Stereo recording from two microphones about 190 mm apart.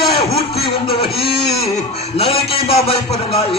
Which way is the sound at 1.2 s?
55° left (ahead or behind).